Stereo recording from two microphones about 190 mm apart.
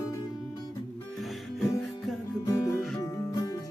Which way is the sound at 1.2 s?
Centre (ahead or behind).